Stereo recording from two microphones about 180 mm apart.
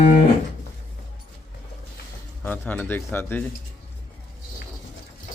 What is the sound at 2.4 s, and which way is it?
Speech, 10° left (ahead or behind).